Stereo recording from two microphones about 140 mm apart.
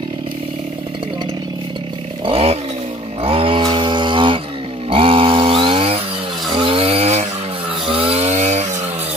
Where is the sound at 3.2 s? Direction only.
40° right (ahead or behind).